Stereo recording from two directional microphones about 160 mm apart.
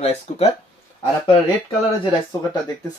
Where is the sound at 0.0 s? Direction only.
45° left (ahead or behind).